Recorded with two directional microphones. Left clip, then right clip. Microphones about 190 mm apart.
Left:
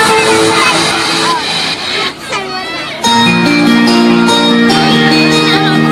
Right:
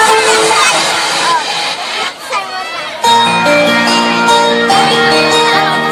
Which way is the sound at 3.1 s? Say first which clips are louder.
Right 1 dB; 50° right (ahead or behind).